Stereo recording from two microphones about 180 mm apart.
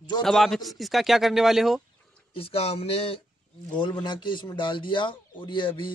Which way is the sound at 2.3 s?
30° left (ahead or behind).